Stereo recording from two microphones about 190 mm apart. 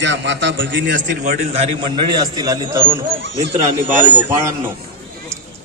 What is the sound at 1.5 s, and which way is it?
A man's voice, 30° right (ahead or behind).